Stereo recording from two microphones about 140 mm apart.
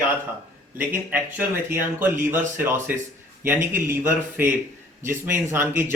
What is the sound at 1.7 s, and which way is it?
Speech, 15° right (ahead or behind).